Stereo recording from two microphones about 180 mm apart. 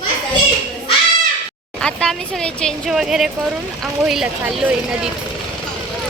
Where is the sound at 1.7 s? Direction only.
5° left (ahead or behind).